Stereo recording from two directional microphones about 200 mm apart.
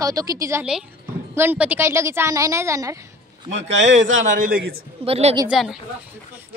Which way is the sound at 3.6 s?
65° right (ahead or behind).